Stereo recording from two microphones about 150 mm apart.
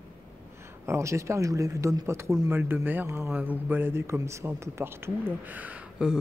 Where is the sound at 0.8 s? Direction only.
20° right (ahead or behind).